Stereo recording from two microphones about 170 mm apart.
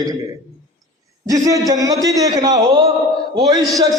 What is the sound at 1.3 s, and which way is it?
A man's voice, 20° right (ahead or behind).